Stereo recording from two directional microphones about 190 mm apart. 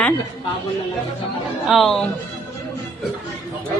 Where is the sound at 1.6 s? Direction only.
Centre (ahead or behind).